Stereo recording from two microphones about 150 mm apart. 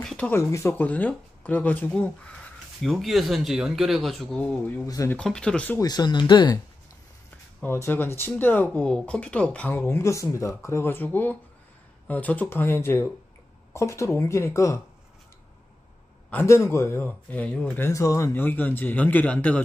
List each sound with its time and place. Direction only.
0.0 s a sound: 5° left (ahead or behind)
0.3 s speech: 20° left (ahead or behind)
4.8 s speech: 20° left (ahead or behind)
5.1 s speech: 5° left (ahead or behind)
5.8 s speech: 25° left (ahead or behind)
7.6 s speech: 15° left (ahead or behind)
16.3 s speech: 15° left (ahead or behind)